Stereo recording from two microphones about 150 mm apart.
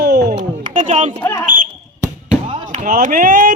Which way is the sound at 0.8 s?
50° right (ahead or behind).